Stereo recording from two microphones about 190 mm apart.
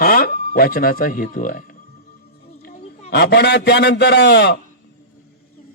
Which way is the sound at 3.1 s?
60° left (ahead or behind).